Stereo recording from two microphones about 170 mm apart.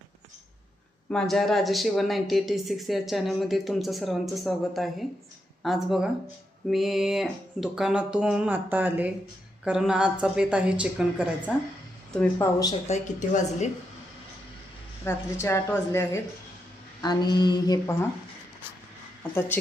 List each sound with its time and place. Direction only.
1.1 s a woman's voice: centre (ahead or behind)
12.1 s a woman's voice: 10° left (ahead or behind)
12.9 s a woman's voice: 45° left (ahead or behind)
15.0 s a woman's voice: 15° left (ahead or behind)
17.0 s a sound: 25° left (ahead or behind)